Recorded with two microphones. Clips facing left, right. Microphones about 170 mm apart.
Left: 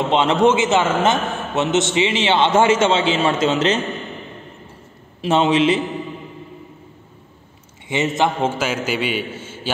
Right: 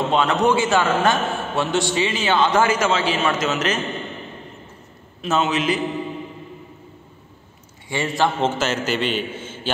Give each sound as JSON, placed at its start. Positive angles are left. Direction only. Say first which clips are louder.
{"t": 0.1, "sound": "a man's voice", "louder": "left 4 dB", "side_deg": 25}
{"t": 5.2, "sound": "a man's voice", "louder": "left 5 dB", "side_deg": 30}
{"t": 7.9, "sound": "a man's voice", "louder": "left 2 dB", "side_deg": 20}
{"t": 8.4, "sound": "a man's voice", "louder": "even", "side_deg": 10}